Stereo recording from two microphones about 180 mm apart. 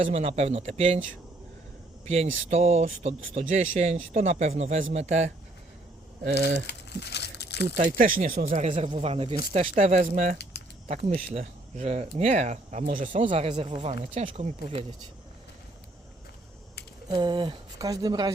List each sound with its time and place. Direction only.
0.0 s speech: 35° right (ahead or behind)
2.0 s speech: 35° right (ahead or behind)
6.4 s speech: 50° right (ahead or behind)
6.7 s crumpling: 65° left (ahead or behind)
7.8 s speech: 50° right (ahead or behind)
13.1 s speech: 35° right (ahead or behind)
17.1 s speech: 25° right (ahead or behind)